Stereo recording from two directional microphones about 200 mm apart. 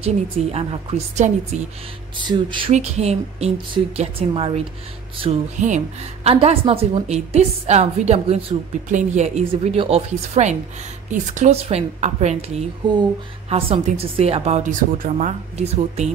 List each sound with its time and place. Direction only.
0.0 s a woman's voice: 30° right (ahead or behind)
2.1 s a woman's voice: 25° right (ahead or behind)